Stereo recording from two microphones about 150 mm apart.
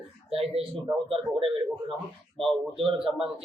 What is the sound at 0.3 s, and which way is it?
Speech, 40° right (ahead or behind).